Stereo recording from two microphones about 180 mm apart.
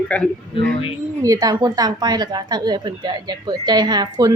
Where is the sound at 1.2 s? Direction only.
20° right (ahead or behind).